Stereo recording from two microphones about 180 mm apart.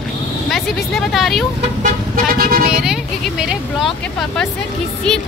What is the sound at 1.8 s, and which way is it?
Vehicle, 50° right (ahead or behind).